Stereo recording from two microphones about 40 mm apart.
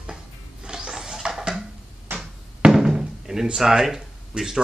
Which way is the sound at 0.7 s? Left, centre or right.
Centre.